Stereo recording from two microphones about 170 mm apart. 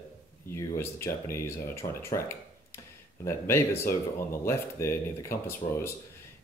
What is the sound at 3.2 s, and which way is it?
Speech, 15° left (ahead or behind).